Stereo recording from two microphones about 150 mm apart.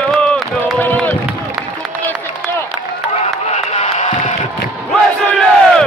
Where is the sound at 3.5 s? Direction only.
45° left (ahead or behind).